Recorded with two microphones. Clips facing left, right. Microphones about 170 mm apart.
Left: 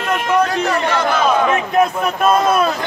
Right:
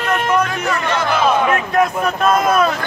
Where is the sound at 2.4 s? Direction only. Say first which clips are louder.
Even; 30° left (ahead or behind).